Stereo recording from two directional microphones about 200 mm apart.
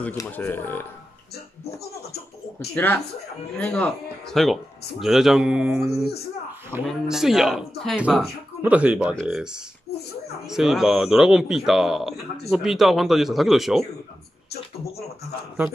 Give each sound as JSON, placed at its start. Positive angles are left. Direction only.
{"t": 0.2, "sound": "speech", "side_deg": 10}
{"t": 1.3, "sound": "a sound", "side_deg": 50}
{"t": 2.7, "sound": "speech", "side_deg": 10}